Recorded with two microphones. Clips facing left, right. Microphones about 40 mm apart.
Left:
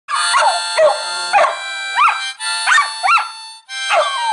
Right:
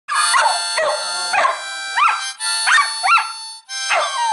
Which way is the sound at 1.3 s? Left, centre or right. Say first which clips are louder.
Left 4 dB; centre.